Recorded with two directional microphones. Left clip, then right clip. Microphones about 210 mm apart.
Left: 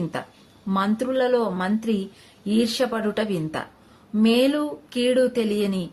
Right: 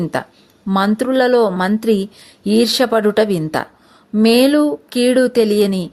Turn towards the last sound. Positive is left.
turn(degrees=-40)  # may be behind; listen again after turning